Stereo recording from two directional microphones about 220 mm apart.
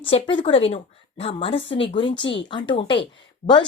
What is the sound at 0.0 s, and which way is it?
A woman's voice, 25° left (ahead or behind).